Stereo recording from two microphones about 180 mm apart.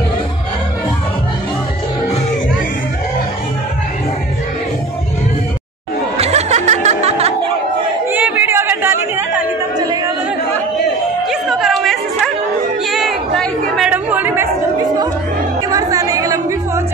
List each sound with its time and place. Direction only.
6.1 s music: 35° right (ahead or behind)
8.1 s chatter: 10° right (ahead or behind)
11.2 s a sound: centre (ahead or behind)
12.9 s chatter: centre (ahead or behind)
15.7 s chatter: 20° right (ahead or behind)